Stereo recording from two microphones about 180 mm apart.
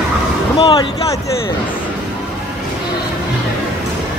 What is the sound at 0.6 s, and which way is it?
Speech, 25° left (ahead or behind).